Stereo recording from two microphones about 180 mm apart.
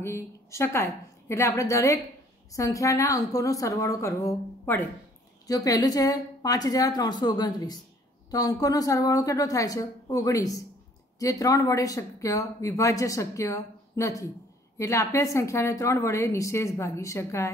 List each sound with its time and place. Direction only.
0.0 s a woman's voice: 15° left (ahead or behind)